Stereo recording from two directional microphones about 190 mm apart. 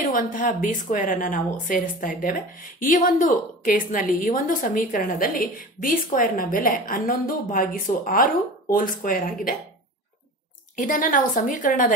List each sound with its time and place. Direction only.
0.0 s a woman's voice: 45° left (ahead or behind)
10.8 s a woman's voice: 45° left (ahead or behind)